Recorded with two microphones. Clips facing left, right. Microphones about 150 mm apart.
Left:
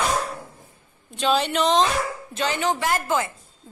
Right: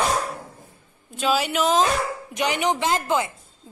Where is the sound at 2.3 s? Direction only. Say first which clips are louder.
Right 2 dB; 15° right (ahead or behind).